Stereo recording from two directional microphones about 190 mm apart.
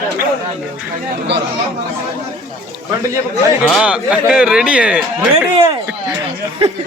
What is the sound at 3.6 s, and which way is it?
Speech, centre (ahead or behind).